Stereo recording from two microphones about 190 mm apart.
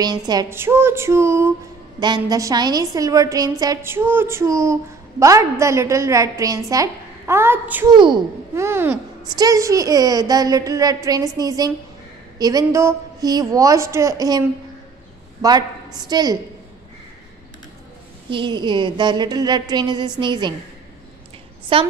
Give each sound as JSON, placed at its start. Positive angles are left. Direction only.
{"t": 0.0, "sound": "a woman's voice", "side_deg": -20}
{"t": 7.9, "sound": "a child's voice", "side_deg": -25}
{"t": 18.3, "sound": "a child's voice", "side_deg": -25}
{"t": 21.7, "sound": "a child's voice", "side_deg": -30}